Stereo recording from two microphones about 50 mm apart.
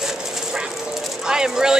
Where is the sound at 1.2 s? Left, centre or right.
Centre.